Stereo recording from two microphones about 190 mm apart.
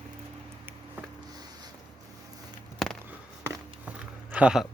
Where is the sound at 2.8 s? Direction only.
Centre (ahead or behind).